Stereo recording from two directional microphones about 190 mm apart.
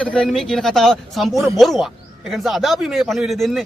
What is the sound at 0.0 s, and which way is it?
Speech, 5° left (ahead or behind).